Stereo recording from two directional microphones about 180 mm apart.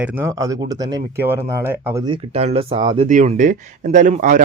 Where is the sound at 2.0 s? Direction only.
30° right (ahead or behind).